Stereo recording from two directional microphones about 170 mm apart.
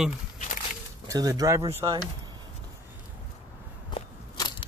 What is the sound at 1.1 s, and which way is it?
Speech, 20° right (ahead or behind).